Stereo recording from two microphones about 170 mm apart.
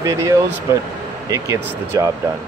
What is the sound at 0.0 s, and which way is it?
Speech, 20° right (ahead or behind).